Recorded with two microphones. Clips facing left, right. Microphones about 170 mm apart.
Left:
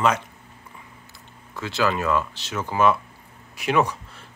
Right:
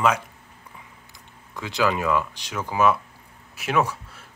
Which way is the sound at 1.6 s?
15° right (ahead or behind).